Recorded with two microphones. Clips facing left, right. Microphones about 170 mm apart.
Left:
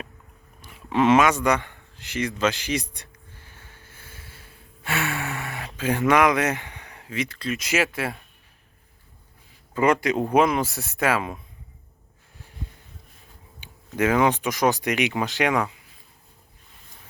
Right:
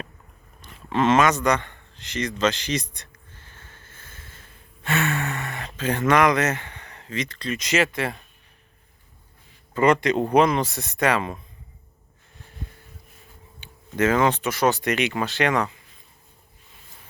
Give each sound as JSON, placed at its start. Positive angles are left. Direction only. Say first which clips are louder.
{"t": 0.6, "sound": "a man's voice", "louder": "left 1 dB", "side_deg": 10}
{"t": 2.9, "sound": "snort", "louder": "left 1 dB", "side_deg": 10}
{"t": 9.7, "sound": "speech", "louder": "right 2 dB", "side_deg": 5}
{"t": 13.6, "sound": "speech", "louder": "right 1 dB", "side_deg": 10}